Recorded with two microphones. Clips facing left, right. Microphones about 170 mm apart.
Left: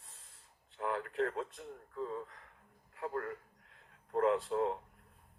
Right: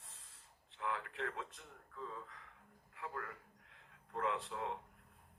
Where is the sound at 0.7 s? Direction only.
40° left (ahead or behind).